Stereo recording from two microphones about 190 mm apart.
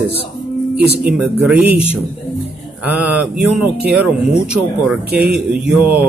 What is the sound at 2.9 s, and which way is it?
Speech, 10° right (ahead or behind).